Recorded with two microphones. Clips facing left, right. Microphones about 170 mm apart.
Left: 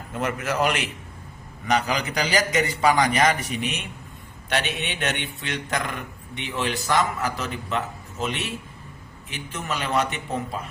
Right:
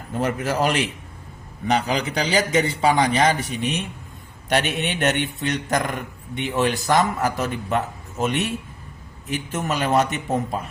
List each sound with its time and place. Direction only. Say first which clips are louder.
0.1 s a man's voice: right 3 dB; 35° right (ahead or behind)
9.5 s a man's voice: right 5 dB; 45° right (ahead or behind)